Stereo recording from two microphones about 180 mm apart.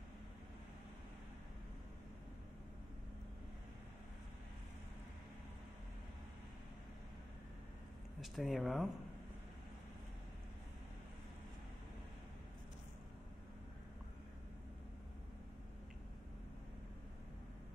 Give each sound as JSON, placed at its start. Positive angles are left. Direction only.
{"t": 8.2, "sound": "speech", "side_deg": 0}